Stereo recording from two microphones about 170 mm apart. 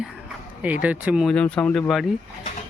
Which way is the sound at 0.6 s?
10° right (ahead or behind).